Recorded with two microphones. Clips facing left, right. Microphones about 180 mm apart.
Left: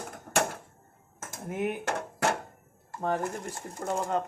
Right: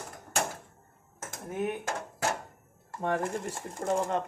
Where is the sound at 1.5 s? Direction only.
70° left (ahead or behind).